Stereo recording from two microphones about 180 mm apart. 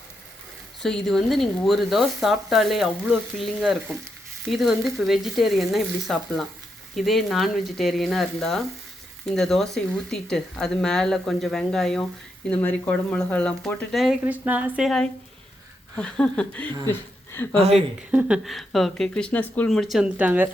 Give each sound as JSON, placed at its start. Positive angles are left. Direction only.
{"t": 0.8, "sound": "speech", "side_deg": 0}
{"t": 17.5, "sound": "a woman's voice", "side_deg": -35}
{"t": 17.7, "sound": "speech", "side_deg": -5}